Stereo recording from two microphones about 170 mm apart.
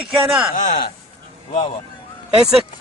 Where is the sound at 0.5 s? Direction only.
50° left (ahead or behind).